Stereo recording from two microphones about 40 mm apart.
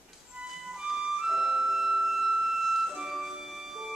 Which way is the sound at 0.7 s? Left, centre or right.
Centre.